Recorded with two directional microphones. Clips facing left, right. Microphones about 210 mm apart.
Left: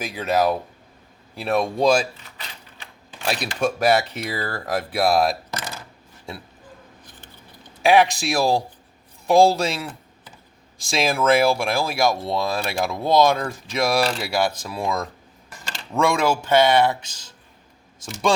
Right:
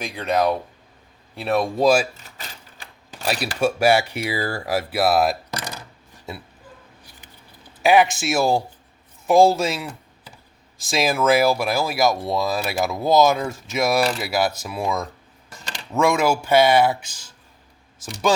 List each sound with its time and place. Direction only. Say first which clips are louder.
0.0 s speech: even; 5° left (ahead or behind)
2.1 s sewing machine: right 1 dB; 45° right (ahead or behind)
3.2 s speech: right 1 dB; 5° right (ahead or behind)
7.6 s speech: even; centre (ahead or behind)